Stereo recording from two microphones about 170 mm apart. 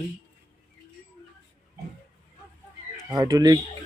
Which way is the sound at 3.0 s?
25° right (ahead or behind).